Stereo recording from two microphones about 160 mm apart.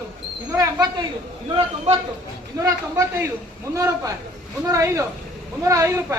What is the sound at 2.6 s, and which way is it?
A man's voice, 20° right (ahead or behind).